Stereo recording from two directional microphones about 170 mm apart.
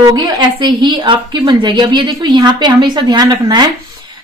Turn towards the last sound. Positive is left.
turn(degrees=-25)  # may be behind; listen again after turning